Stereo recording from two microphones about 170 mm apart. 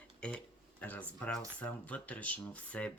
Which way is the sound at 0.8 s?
10° left (ahead or behind).